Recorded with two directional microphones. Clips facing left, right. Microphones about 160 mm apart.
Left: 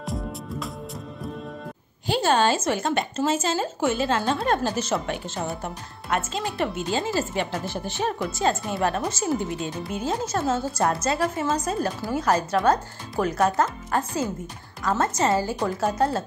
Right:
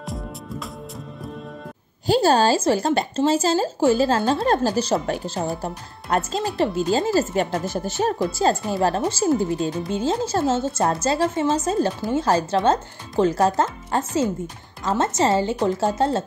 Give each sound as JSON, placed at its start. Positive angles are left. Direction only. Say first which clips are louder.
{"t": 2.0, "sound": "speech", "louder": "right 4 dB", "side_deg": -35}